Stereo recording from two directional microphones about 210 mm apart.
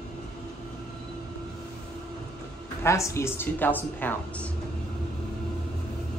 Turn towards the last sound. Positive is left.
turn(degrees=10)  # may be behind; listen again after turning